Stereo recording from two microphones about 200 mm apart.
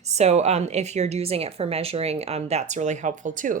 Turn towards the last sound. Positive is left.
turn(degrees=-40)  # may be behind; listen again after turning